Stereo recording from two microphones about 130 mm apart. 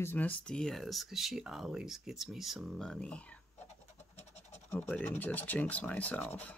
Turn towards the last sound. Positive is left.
turn(degrees=10)  # may be behind; listen again after turning